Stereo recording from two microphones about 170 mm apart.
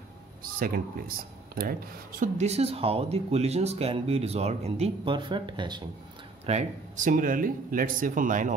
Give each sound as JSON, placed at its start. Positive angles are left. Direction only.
{"t": 0.4, "sound": "speech", "side_deg": -60}
{"t": 6.4, "sound": "speech", "side_deg": -45}